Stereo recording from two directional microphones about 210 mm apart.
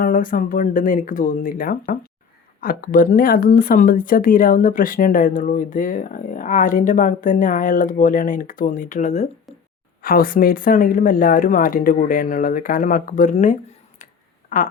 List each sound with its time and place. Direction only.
0.0 s speech: 40° left (ahead or behind)
10.0 s speech: 45° left (ahead or behind)
14.0 s a sound: 35° left (ahead or behind)
14.5 s speech: 40° left (ahead or behind)